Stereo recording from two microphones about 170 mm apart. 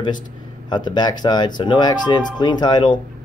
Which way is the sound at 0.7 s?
25° left (ahead or behind).